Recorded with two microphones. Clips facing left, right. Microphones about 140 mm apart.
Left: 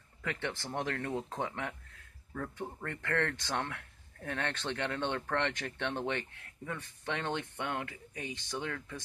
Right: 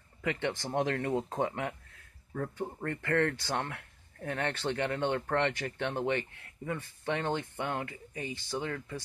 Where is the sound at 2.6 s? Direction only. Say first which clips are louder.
Right 4 dB; 10° right (ahead or behind).